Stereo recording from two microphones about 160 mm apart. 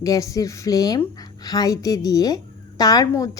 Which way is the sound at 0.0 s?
20° left (ahead or behind).